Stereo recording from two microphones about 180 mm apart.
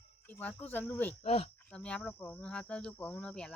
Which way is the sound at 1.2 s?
35° left (ahead or behind).